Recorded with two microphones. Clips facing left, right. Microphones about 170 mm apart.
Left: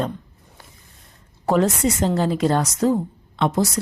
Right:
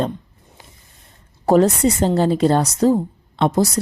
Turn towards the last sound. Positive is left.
turn(degrees=-35)  # may be behind; listen again after turning